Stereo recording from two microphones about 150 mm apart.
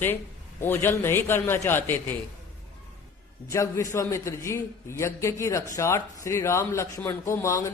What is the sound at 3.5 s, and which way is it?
A man's voice, 20° left (ahead or behind).